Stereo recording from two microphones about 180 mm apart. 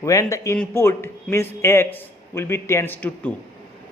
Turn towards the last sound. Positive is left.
turn(degrees=10)  # may be behind; listen again after turning